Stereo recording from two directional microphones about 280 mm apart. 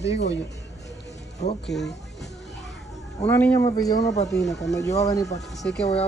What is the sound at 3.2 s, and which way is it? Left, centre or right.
Speech, centre.